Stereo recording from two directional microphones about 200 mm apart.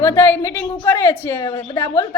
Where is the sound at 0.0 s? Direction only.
10° left (ahead or behind).